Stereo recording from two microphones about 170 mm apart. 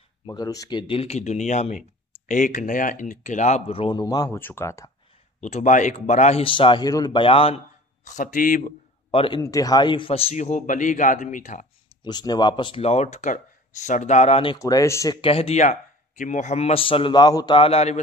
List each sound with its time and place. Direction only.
0.3 s speech: 20° left (ahead or behind)
4.0 s speech: 20° left (ahead or behind)
5.4 s speech: 45° left (ahead or behind)
9.1 s a man's voice: 30° left (ahead or behind)
9.4 s speech: 20° left (ahead or behind); by 11.6 s 50° left (ahead or behind)
12.0 s speech: 25° left (ahead or behind)
14.6 s speech: 20° left (ahead or behind)
15.2 s speech: 35° left (ahead or behind)